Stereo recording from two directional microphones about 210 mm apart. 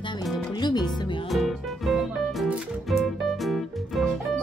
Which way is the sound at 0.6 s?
20° left (ahead or behind).